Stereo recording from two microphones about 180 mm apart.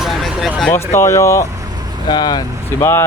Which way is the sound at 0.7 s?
15° left (ahead or behind).